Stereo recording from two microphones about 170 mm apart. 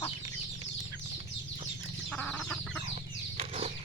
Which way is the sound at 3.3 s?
35° right (ahead or behind).